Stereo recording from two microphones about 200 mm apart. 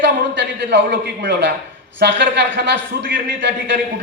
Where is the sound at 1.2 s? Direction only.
60° right (ahead or behind).